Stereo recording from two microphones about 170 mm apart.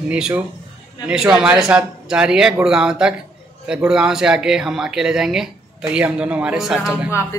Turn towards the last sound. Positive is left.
turn(degrees=15)  # may be behind; listen again after turning